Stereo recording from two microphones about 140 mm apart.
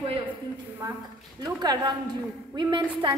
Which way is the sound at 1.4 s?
30° right (ahead or behind).